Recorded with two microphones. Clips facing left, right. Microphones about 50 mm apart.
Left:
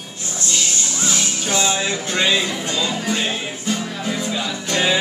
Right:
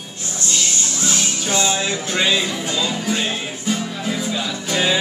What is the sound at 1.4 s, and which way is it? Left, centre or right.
Music, centre.